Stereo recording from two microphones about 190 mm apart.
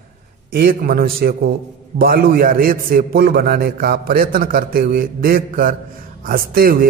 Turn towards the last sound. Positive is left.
turn(degrees=-50)  # may be behind; listen again after turning